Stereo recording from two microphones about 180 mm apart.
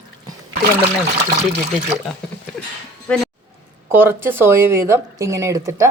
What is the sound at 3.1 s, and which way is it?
Speech, 5° left (ahead or behind).